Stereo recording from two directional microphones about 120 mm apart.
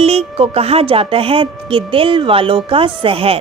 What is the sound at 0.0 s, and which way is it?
A woman's voice, 55° right (ahead or behind).